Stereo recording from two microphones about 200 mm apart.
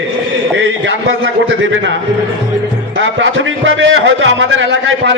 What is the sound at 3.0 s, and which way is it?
A man's voice, 70° right (ahead or behind).